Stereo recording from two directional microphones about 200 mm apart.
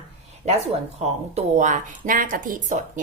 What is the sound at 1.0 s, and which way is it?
A woman's voice, 35° right (ahead or behind).